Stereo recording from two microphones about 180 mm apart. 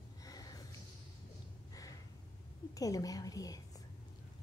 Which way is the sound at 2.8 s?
20° left (ahead or behind).